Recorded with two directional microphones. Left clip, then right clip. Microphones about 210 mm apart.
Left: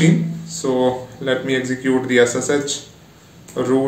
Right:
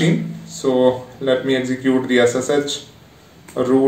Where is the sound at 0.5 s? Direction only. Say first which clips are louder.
Right 3 dB; 15° left (ahead or behind).